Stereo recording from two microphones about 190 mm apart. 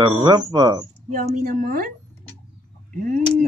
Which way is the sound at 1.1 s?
45° right (ahead or behind).